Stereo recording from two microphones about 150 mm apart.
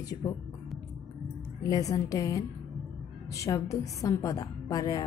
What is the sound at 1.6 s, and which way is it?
A woman's voice, 25° left (ahead or behind).